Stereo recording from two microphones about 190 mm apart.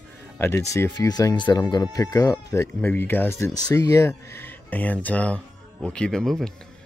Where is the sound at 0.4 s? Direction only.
15° left (ahead or behind).